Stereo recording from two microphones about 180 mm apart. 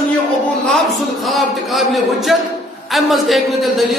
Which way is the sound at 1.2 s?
Centre (ahead or behind).